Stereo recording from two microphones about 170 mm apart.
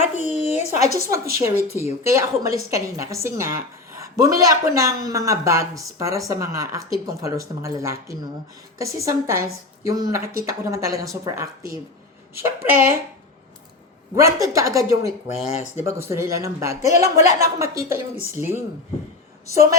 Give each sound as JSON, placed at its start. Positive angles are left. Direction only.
{"t": 0.0, "sound": "a sound", "side_deg": 40}
{"t": 0.9, "sound": "a woman's voice", "side_deg": -15}
{"t": 14.2, "sound": "a woman's voice", "side_deg": -20}